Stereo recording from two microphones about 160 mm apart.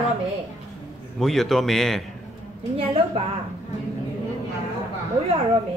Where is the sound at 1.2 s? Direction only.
Centre (ahead or behind).